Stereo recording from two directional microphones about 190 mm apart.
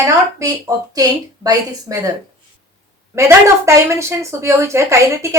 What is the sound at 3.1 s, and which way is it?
Speech, 15° right (ahead or behind).